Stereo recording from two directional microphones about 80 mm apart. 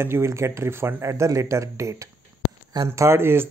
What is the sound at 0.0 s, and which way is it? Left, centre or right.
Speech, right.